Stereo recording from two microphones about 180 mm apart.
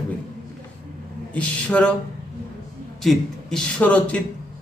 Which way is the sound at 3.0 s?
Centre (ahead or behind).